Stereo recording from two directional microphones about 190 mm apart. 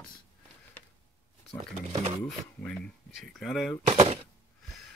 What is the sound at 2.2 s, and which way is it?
Speech, 5° left (ahead or behind).